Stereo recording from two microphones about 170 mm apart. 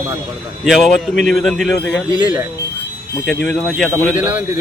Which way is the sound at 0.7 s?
Centre (ahead or behind).